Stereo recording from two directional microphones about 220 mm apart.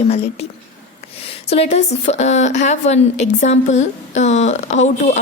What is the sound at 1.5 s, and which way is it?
A woman's voice, 25° left (ahead or behind).